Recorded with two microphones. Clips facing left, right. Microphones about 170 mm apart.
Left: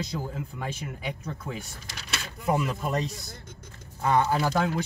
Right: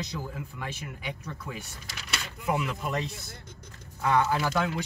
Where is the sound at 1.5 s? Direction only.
40° left (ahead or behind).